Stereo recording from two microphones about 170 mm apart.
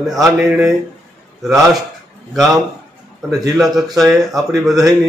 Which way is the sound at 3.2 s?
Centre (ahead or behind).